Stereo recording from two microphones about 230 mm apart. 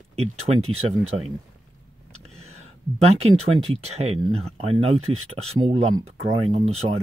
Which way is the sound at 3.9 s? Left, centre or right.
Right.